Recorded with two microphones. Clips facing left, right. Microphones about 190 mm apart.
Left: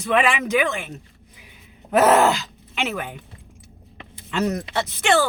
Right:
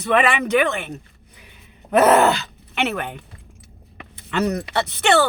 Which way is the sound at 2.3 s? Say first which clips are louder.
Right 3 dB; 60° right (ahead or behind).